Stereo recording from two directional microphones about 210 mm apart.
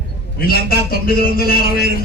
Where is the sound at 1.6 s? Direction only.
50° right (ahead or behind).